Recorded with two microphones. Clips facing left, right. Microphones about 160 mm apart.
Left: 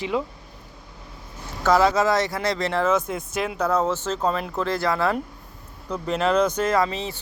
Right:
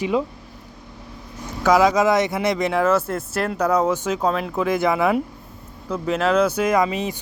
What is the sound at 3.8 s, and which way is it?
Speech, 15° right (ahead or behind).